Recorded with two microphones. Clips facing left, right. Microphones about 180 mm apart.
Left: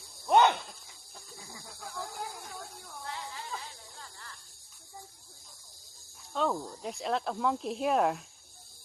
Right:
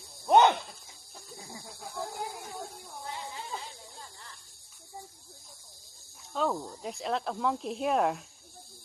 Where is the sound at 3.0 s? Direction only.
20° right (ahead or behind).